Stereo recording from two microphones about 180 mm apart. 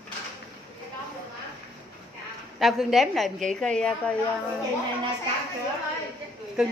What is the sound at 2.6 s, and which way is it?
A woman's voice, centre (ahead or behind).